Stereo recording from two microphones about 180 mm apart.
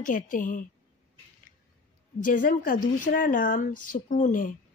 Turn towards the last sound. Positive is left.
turn(degrees=50)  # may be behind; listen again after turning